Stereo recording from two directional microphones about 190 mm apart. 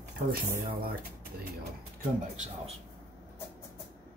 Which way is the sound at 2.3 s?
35° right (ahead or behind).